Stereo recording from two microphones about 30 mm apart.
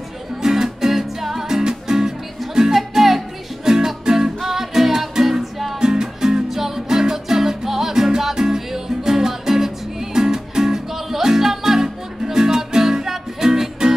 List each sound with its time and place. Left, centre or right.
0.4 s music: centre
1.6 s music: right
4.4 s music: centre
5.4 s music: centre
5.8 s music: right